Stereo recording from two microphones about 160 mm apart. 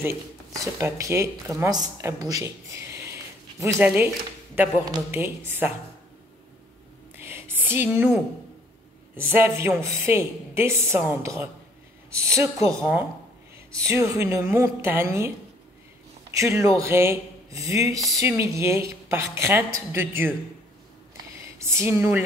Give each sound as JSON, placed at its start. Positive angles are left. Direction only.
{"t": 0.0, "sound": "speech", "side_deg": -15}
{"t": 7.2, "sound": "a sound", "side_deg": -15}
{"t": 9.1, "sound": "a woman's voice", "side_deg": -15}
{"t": 16.3, "sound": "speech", "side_deg": -20}
{"t": 21.5, "sound": "speech", "side_deg": -15}